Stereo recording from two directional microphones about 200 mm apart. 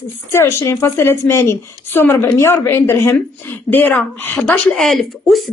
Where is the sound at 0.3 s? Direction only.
15° left (ahead or behind).